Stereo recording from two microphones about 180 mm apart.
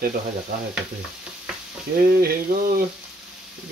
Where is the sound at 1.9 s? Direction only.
50° right (ahead or behind).